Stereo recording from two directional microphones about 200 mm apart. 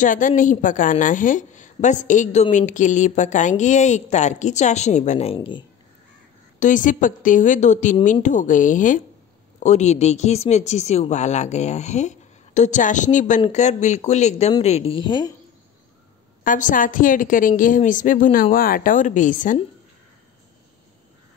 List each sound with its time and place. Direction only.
0.0 s a woman's voice: 40° left (ahead or behind); by 5.7 s 25° left (ahead or behind)
6.6 s a woman's voice: 40° left (ahead or behind); by 15.3 s 25° left (ahead or behind)
16.4 s a woman's voice: 40° left (ahead or behind)